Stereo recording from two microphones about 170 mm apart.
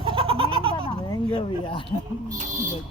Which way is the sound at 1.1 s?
30° left (ahead or behind).